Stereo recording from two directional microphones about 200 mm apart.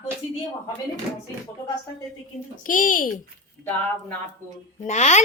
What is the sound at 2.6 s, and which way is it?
Speech, 45° left (ahead or behind).